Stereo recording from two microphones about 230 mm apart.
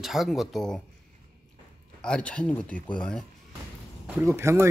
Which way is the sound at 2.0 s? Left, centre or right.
Centre.